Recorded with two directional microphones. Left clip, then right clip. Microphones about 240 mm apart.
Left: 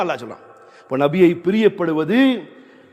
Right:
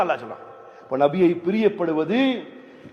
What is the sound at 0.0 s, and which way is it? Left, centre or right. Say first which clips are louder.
A man's voice: even; left.